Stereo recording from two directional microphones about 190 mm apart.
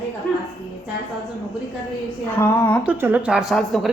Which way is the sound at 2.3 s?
10° left (ahead or behind).